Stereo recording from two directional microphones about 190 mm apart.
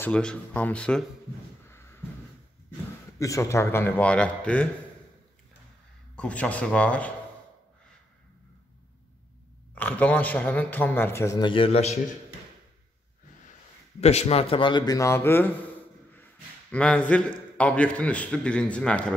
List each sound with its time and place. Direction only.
0.0 s speech: 5° left (ahead or behind)
1.7 s a sound: 15° left (ahead or behind)
3.2 s a man's voice: 15° left (ahead or behind)
6.1 s a man's voice: 5° left (ahead or behind)
9.8 s a man's voice: 10° left (ahead or behind); by 12.0 s 35° left (ahead or behind)
14.0 s a man's voice: 35° left (ahead or behind); by 15.5 s 10° left (ahead or behind)
16.7 s a man's voice: 5° left (ahead or behind)